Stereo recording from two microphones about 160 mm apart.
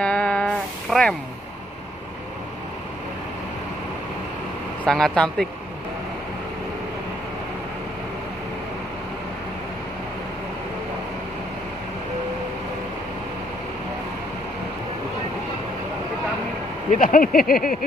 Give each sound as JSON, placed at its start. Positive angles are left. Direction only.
{"t": 0.0, "sound": "music", "side_deg": 5}
{"t": 4.8, "sound": "speech", "side_deg": 5}
{"t": 17.0, "sound": "speech", "side_deg": 60}